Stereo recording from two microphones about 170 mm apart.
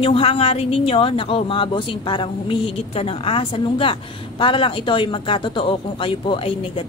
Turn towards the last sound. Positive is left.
turn(degrees=30)  # may be behind; listen again after turning